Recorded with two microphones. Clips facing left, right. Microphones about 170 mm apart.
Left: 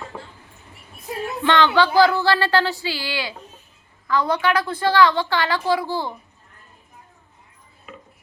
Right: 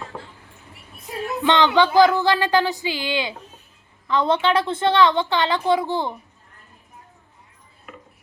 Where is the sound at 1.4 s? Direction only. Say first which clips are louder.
Even; 20° right (ahead or behind).